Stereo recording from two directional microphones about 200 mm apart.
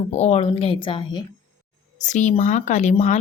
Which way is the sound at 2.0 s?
35° left (ahead or behind).